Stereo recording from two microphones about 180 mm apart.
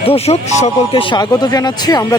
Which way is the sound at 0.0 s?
35° left (ahead or behind).